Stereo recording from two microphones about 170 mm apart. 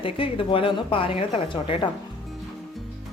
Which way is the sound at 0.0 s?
30° left (ahead or behind).